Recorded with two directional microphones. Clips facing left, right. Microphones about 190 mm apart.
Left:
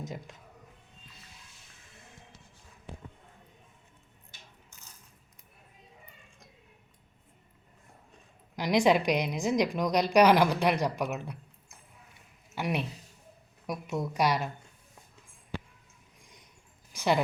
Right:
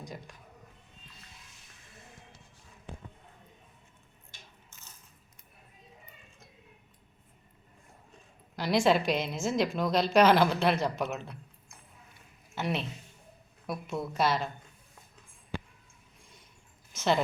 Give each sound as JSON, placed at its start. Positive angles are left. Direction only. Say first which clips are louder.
{"t": 0.0, "sound": "speech", "louder": "left 3 dB", "side_deg": 20}
{"t": 8.5, "sound": "a woman's voice", "louder": "left 1 dB", "side_deg": 15}
{"t": 12.5, "sound": "a woman's voice", "louder": "left 1 dB", "side_deg": 10}
{"t": 16.2, "sound": "a sound", "louder": "even", "side_deg": 15}
{"t": 16.9, "sound": "speech", "louder": "even", "side_deg": 15}